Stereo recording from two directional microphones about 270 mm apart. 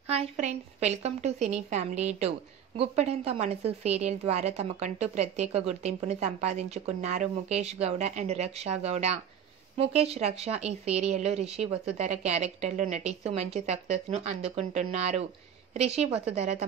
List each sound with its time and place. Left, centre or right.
0.1 s a woman's voice: right